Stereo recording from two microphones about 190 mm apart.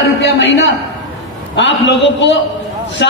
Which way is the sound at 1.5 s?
70° left (ahead or behind).